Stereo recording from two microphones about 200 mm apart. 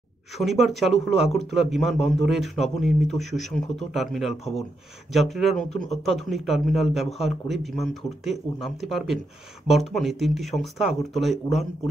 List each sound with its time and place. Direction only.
0.4 s a man's voice: centre (ahead or behind)
5.7 s speech: 35° left (ahead or behind)
6.0 s a man's voice: centre (ahead or behind)